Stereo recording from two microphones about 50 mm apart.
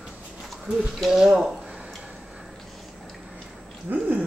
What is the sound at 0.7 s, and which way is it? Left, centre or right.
Speech, centre.